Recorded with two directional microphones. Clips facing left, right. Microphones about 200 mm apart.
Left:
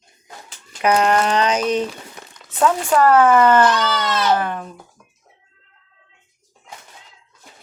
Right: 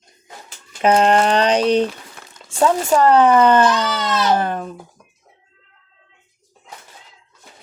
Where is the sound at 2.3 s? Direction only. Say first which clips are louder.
Right 1 dB; 25° right (ahead or behind).